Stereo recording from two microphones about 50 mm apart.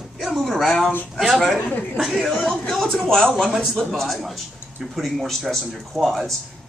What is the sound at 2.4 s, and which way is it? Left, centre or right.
A man's voice, centre.